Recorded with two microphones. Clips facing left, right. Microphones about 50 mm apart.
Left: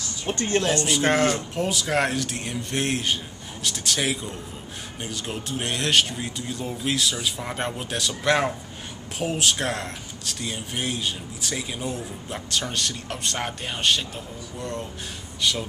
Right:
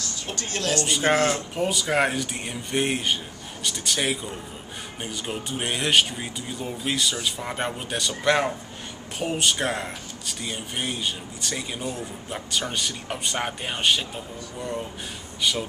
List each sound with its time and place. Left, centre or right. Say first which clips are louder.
0.3 s a woman's voice: left 5 dB; left
0.8 s speech: even; centre